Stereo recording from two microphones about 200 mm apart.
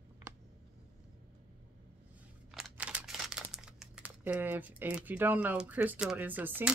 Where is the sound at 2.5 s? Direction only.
5° right (ahead or behind).